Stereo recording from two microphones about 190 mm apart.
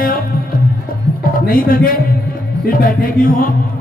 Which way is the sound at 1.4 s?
50° left (ahead or behind).